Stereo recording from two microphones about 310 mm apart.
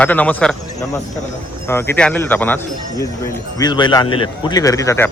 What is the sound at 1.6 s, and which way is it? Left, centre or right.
Speech, centre.